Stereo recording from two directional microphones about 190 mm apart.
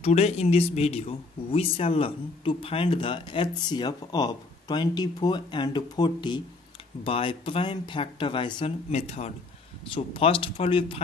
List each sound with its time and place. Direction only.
0.0 s speech: 35° left (ahead or behind)